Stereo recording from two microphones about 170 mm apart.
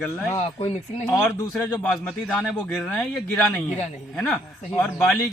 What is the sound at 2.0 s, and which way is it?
Speech, 5° left (ahead or behind).